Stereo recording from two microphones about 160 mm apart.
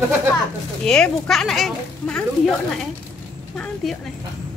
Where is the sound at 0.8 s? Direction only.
5° left (ahead or behind).